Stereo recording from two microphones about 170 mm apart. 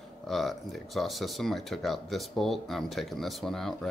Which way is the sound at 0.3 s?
Centre (ahead or behind).